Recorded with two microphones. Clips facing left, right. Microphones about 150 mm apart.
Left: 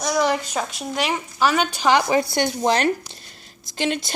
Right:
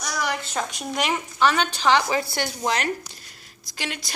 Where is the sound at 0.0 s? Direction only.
25° left (ahead or behind).